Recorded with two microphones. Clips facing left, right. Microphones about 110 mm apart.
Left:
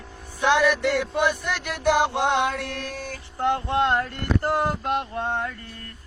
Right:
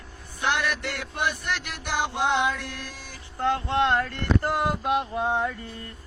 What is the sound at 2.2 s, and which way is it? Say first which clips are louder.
Mantra: left 2 dB; 45° left (ahead or behind).